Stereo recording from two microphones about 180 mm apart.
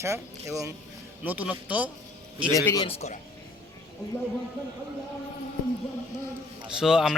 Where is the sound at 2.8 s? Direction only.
35° left (ahead or behind).